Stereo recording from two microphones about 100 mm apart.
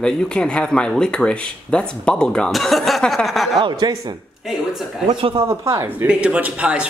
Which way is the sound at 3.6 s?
45° right (ahead or behind).